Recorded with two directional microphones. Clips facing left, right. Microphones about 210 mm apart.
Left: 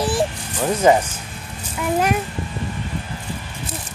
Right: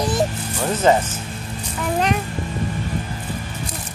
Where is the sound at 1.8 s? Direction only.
5° left (ahead or behind).